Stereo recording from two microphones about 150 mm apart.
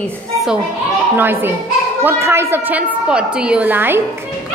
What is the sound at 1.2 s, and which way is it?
A woman's voice, 15° right (ahead or behind).